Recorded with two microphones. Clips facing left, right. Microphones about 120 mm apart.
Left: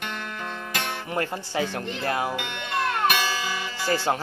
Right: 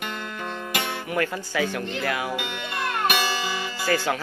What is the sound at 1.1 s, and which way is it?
Speech, 30° left (ahead or behind).